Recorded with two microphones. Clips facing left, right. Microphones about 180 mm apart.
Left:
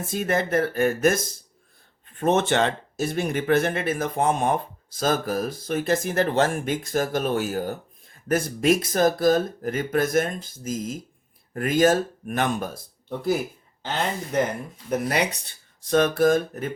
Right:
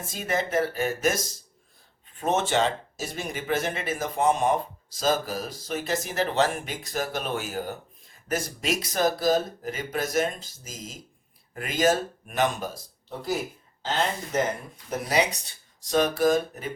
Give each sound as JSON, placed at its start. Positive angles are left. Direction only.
{"t": 0.1, "sound": "speech", "side_deg": 55}
{"t": 14.8, "sound": "speech", "side_deg": 55}